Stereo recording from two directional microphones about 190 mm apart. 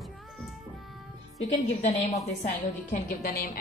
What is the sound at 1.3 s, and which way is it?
Speech, 35° left (ahead or behind).